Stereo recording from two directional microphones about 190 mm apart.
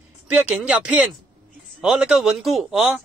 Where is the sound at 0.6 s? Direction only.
5° right (ahead or behind).